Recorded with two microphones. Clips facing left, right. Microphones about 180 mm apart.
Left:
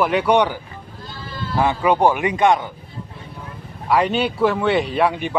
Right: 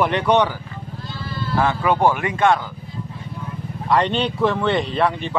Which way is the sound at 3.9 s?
10° left (ahead or behind).